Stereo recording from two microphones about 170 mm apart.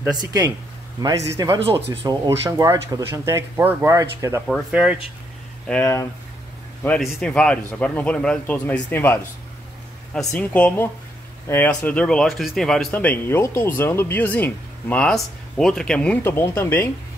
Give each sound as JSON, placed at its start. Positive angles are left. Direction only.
{"t": 1.0, "sound": "a man's voice", "side_deg": -20}
{"t": 4.5, "sound": "speech", "side_deg": -5}
{"t": 5.7, "sound": "speech", "side_deg": 10}